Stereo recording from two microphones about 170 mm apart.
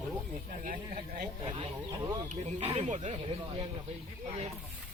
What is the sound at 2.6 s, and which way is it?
Speech, 40° right (ahead or behind).